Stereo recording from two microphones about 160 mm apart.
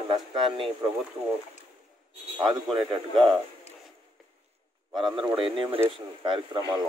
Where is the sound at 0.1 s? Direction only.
30° right (ahead or behind).